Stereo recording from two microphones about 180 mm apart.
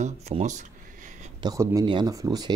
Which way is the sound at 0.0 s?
40° right (ahead or behind).